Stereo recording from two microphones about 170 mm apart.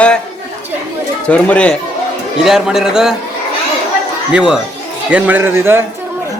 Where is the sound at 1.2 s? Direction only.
10° left (ahead or behind).